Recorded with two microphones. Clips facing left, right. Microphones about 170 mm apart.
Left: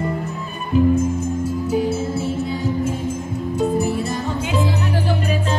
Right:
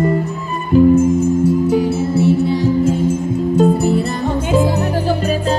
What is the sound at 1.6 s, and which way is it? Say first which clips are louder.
Music: right 5 dB; 70° right (ahead or behind).